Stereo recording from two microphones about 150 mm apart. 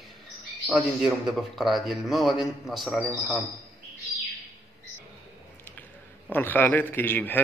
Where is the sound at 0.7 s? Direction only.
10° right (ahead or behind).